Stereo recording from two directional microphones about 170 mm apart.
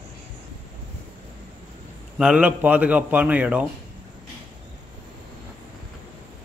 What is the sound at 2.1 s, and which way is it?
Speech, 5° right (ahead or behind).